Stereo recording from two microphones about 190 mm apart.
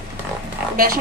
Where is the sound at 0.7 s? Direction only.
50° right (ahead or behind).